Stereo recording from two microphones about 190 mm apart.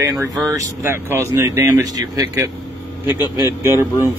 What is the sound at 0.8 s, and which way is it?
Speech, 15° right (ahead or behind).